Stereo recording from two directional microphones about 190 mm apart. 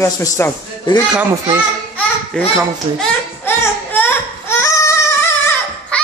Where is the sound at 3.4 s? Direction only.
10° left (ahead or behind).